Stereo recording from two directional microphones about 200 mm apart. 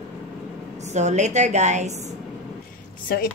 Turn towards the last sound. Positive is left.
turn(degrees=45)  # may be behind; listen again after turning